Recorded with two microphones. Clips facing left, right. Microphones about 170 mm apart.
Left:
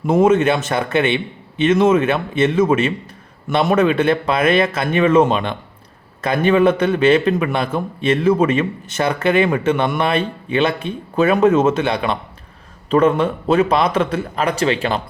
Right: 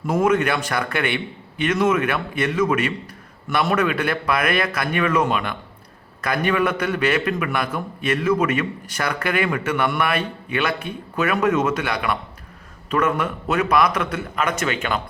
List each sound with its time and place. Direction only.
0.0 s a man's voice: 25° left (ahead or behind)